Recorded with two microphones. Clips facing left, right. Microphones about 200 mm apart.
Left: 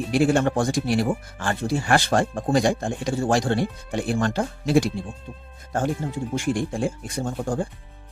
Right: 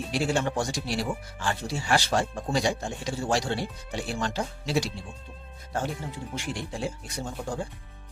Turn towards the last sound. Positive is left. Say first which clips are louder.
# left 7 dB
turn(degrees=50)  # may be behind; listen again after turning